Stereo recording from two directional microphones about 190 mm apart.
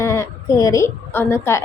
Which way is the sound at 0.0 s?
15° left (ahead or behind).